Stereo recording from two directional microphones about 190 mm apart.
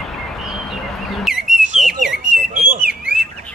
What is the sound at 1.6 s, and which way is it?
Bird, 40° right (ahead or behind).